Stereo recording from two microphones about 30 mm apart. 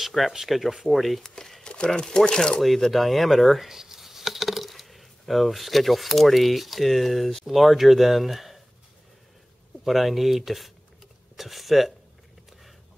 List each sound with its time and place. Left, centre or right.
0.0 s speech: centre
1.2 s speech: centre
2.9 s speech: centre
3.6 s coin: centre
7.4 s speech: centre
9.8 s speech: centre